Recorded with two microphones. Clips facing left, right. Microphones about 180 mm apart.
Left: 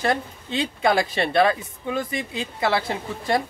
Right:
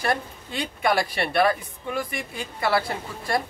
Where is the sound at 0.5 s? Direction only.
25° left (ahead or behind).